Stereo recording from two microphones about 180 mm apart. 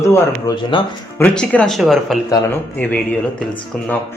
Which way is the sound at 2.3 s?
10° left (ahead or behind).